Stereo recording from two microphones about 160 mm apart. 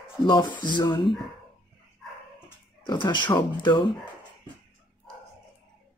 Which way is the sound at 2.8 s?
30° left (ahead or behind).